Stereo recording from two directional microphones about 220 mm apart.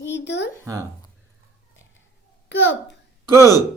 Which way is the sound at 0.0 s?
55° left (ahead or behind).